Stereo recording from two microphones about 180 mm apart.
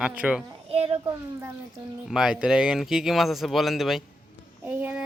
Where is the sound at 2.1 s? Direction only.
5° right (ahead or behind).